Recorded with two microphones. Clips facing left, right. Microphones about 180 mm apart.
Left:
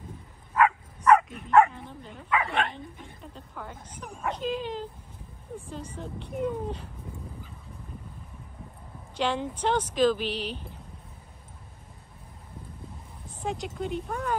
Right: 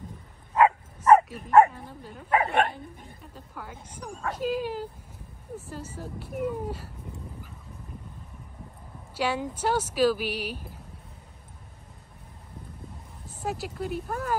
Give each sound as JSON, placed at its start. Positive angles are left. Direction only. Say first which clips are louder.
{"t": 0.6, "sound": "bow-wow", "louder": "right 2 dB", "side_deg": -35}
{"t": 2.2, "sound": "speech", "louder": "right 4 dB", "side_deg": -40}
{"t": 3.3, "sound": "speech", "louder": "even", "side_deg": -5}
{"t": 9.1, "sound": "speech", "louder": "even", "side_deg": -5}
{"t": 13.4, "sound": "vehicle", "louder": "even", "side_deg": -5}
{"t": 13.7, "sound": "speech", "louder": "even", "side_deg": -5}